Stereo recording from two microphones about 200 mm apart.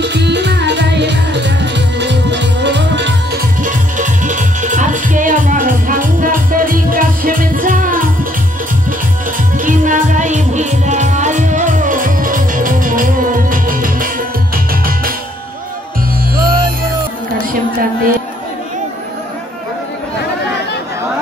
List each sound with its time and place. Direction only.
0.0 s music: 60° right (ahead or behind)
3.6 s music: 40° right (ahead or behind)
9.6 s music: 40° right (ahead or behind)
16.3 s music: 45° right (ahead or behind)